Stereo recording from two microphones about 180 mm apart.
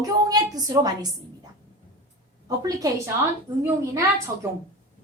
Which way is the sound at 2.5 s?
20° right (ahead or behind).